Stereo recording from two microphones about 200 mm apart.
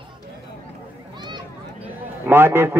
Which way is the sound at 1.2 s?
20° right (ahead or behind).